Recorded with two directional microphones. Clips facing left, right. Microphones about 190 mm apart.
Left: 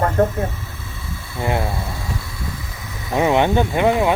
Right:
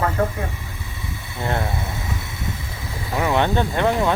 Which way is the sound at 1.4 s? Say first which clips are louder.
Left 3 dB; 15° left (ahead or behind).